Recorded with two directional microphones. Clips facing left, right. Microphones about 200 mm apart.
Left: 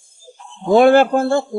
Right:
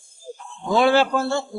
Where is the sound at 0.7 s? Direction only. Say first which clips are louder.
Left 7 dB; 50° left (ahead or behind).